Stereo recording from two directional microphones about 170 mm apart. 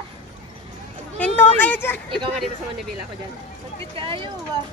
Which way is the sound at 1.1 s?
10° left (ahead or behind).